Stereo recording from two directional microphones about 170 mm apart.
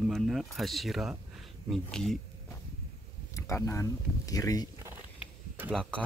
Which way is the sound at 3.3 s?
15° left (ahead or behind).